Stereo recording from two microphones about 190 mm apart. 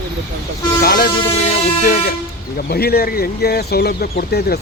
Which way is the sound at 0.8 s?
50° left (ahead or behind).